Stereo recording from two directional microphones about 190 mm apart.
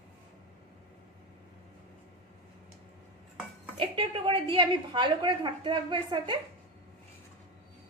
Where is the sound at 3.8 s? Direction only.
25° right (ahead or behind).